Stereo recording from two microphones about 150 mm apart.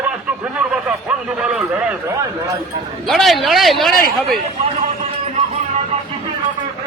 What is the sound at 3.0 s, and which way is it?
Speech, centre (ahead or behind).